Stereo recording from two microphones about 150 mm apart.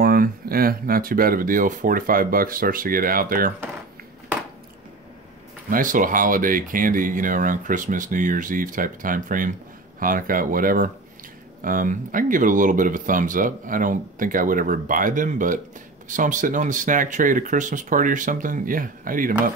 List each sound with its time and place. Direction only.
0.0 s speech: 75° right (ahead or behind)
5.7 s speech: 65° right (ahead or behind)